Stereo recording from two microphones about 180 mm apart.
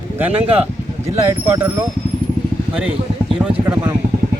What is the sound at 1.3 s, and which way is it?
Speech, 15° right (ahead or behind).